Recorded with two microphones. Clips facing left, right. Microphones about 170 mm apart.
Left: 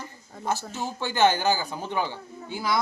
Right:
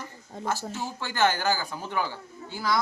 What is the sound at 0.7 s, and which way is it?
A man's voice, 20° left (ahead or behind).